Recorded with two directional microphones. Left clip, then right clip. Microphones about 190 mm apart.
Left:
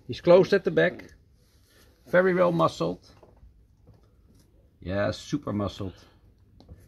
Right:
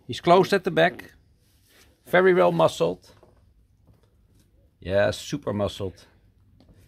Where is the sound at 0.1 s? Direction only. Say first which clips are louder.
Even; 35° right (ahead or behind).